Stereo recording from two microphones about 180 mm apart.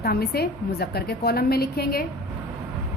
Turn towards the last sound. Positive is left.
turn(degrees=60)  # may be behind; listen again after turning